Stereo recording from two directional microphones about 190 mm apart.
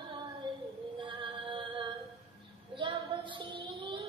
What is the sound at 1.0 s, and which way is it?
Music, 25° right (ahead or behind).